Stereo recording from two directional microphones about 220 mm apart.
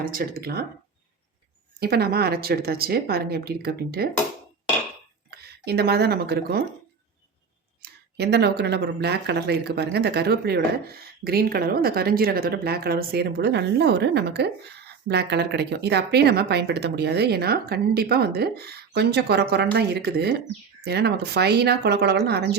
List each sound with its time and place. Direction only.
0.0 s speech: 40° right (ahead or behind)
1.8 s speech: 45° right (ahead or behind)
5.3 s speech: 45° right (ahead or behind)
7.8 s speech: 50° right (ahead or behind)